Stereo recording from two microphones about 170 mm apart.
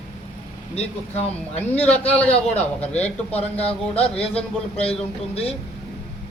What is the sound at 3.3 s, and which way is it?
Speech, 35° left (ahead or behind).